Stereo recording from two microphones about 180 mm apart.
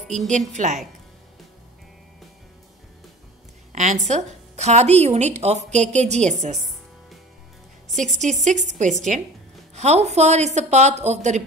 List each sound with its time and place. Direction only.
0.0 s a woman's voice: centre (ahead or behind)
0.3 s a woman's voice: 40° right (ahead or behind)
3.7 s a woman's voice: 40° right (ahead or behind)
8.5 s a woman's voice: 40° right (ahead or behind)